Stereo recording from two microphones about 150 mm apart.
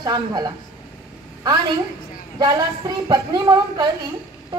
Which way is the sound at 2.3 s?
25° right (ahead or behind).